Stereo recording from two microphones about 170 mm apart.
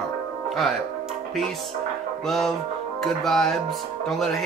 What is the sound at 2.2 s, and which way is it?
Speech, centre (ahead or behind).